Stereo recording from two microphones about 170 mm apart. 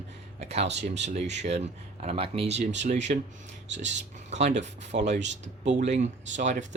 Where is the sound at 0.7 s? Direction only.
90° right.